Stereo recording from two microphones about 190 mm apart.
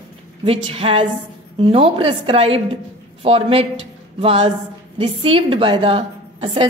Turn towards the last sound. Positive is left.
turn(degrees=-30)  # may be behind; listen again after turning